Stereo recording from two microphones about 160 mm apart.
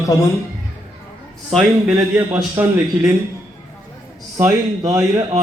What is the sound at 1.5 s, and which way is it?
Speech, 5° right (ahead or behind).